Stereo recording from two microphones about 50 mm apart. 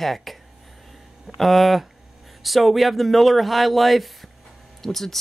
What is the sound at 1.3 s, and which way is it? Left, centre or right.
Speech, centre.